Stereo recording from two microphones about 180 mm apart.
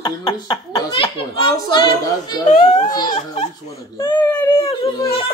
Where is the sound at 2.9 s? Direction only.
25° left (ahead or behind).